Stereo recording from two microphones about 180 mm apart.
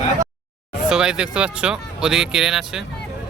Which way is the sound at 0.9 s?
5° right (ahead or behind).